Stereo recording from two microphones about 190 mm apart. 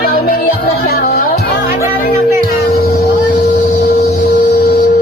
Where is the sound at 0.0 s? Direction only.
50° left (ahead or behind).